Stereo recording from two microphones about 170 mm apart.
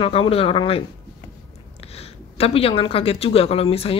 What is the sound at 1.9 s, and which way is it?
Speech, 35° left (ahead or behind).